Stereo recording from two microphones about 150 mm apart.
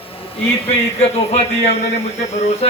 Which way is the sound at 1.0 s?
45° left (ahead or behind).